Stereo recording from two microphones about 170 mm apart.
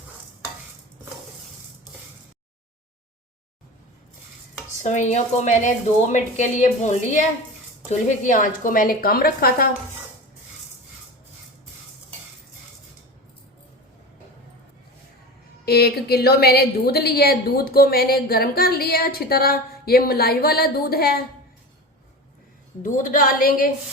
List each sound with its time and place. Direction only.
4.8 s a woman's voice: 45° left (ahead or behind); by 9.6 s 60° left (ahead or behind)
15.6 s a woman's voice: 70° left (ahead or behind)
22.8 s a woman's voice: 50° left (ahead or behind)